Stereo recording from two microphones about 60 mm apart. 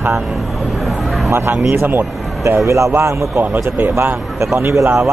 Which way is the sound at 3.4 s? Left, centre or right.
Right.